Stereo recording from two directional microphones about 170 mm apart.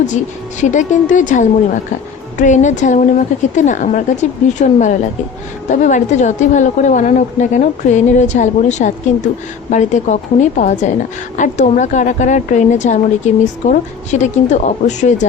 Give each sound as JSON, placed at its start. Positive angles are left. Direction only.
{"t": 0.6, "sound": "a woman's voice", "side_deg": 45}